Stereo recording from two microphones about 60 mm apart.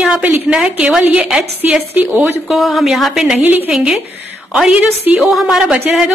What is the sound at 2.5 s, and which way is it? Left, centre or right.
Speech, centre.